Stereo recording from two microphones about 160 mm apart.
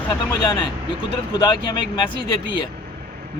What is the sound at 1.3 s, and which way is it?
Speech, 25° left (ahead or behind).